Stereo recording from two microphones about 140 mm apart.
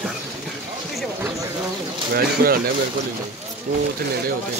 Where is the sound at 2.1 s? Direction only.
90° right.